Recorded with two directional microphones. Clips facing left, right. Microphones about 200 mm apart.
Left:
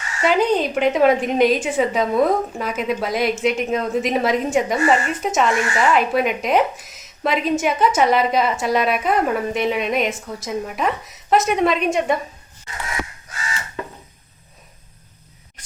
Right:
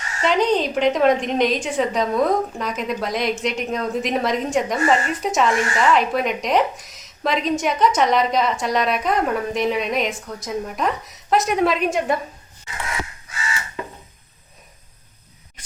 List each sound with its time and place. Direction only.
0.2 s a woman's voice: 5° left (ahead or behind)